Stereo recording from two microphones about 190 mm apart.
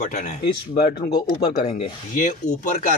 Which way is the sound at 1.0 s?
50° left (ahead or behind).